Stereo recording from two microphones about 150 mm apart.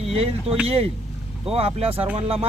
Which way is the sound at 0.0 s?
40° right (ahead or behind).